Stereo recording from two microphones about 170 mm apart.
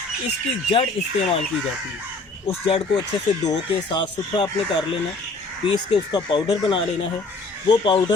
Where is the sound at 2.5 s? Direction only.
35° left (ahead or behind).